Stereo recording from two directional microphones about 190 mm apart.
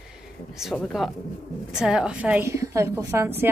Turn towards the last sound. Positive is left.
turn(degrees=-15)  # may be behind; listen again after turning